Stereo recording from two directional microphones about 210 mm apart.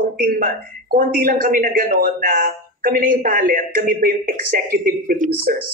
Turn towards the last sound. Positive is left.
turn(degrees=-40)  # may be behind; listen again after turning